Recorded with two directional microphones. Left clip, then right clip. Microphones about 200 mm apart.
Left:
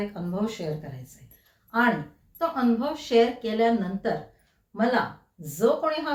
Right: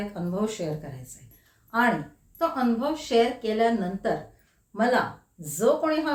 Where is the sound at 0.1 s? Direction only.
15° right (ahead or behind).